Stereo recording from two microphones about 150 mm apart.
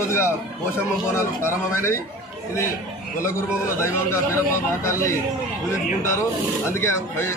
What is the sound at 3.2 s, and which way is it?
A man's voice, 15° left (ahead or behind).